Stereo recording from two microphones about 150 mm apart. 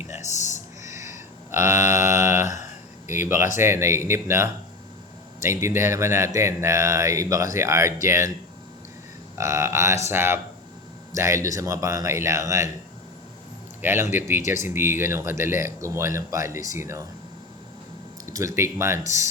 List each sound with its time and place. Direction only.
0.2 s a sound: 50° left (ahead or behind)
0.9 s a sound: 20° right (ahead or behind)
1.6 s mantra: 15° right (ahead or behind)
3.2 s speech: 15° right (ahead or behind)
9.4 s speech: 20° right (ahead or behind)
13.8 s speech: 15° right (ahead or behind)
18.3 s speech: 20° right (ahead or behind)